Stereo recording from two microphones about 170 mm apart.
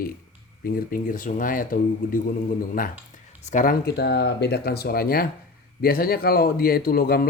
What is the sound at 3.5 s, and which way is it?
Speech, 55° left (ahead or behind).